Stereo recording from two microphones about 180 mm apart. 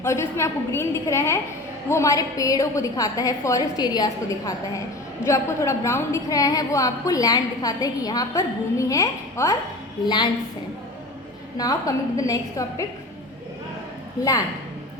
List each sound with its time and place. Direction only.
0.0 s a woman's voice: 15° left (ahead or behind)
11.5 s a woman's voice: 20° left (ahead or behind)
14.2 s a woman's voice: 20° left (ahead or behind)